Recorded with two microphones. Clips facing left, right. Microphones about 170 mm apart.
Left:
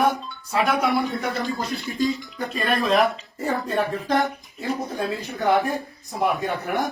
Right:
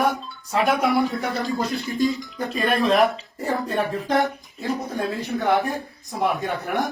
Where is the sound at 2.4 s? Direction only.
Centre (ahead or behind).